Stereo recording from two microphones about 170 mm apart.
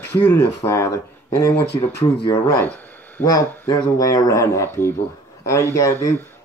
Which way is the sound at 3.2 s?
20° left (ahead or behind).